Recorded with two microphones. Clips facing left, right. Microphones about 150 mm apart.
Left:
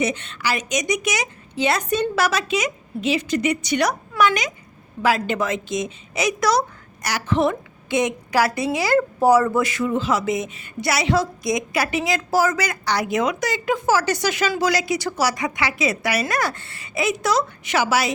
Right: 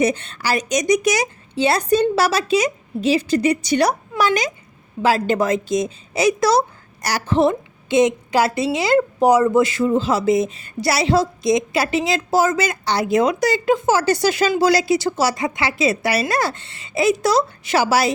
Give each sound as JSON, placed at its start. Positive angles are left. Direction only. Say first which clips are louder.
{"t": 0.0, "sound": "a woman's voice", "louder": "right 4 dB", "side_deg": -35}